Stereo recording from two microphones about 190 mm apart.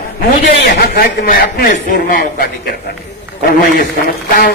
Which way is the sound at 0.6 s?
55° left (ahead or behind).